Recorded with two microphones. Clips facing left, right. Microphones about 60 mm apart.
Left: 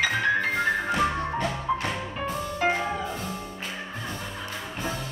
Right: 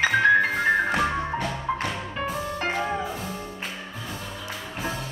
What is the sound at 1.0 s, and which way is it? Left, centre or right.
Music, centre.